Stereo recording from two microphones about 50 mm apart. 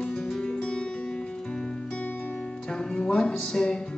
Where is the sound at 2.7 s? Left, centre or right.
Centre.